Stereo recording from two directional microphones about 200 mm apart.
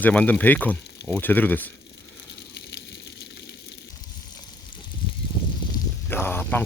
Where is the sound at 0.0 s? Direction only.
5° left (ahead or behind).